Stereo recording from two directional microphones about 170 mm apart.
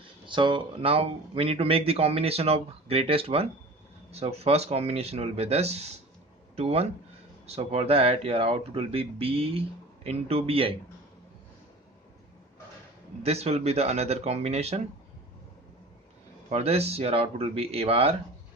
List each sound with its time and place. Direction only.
0.3 s speech: 30° right (ahead or behind)
13.2 s speech: 40° right (ahead or behind)
16.5 s speech: 40° right (ahead or behind)